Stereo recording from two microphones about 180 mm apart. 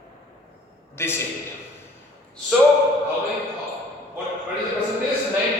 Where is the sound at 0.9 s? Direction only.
15° left (ahead or behind).